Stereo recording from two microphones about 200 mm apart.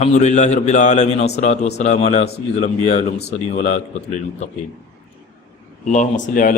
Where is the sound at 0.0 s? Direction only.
35° left (ahead or behind).